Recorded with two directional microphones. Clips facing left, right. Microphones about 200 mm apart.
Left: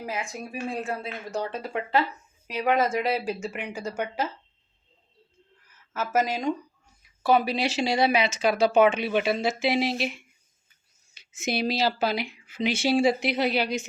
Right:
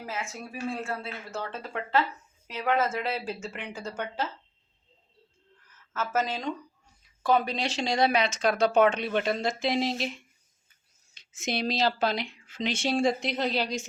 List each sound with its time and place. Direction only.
0.0 s speech: 15° left (ahead or behind)
5.9 s speech: 10° left (ahead or behind)